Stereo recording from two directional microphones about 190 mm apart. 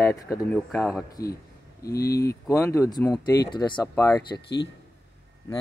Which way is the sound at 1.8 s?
15° left (ahead or behind).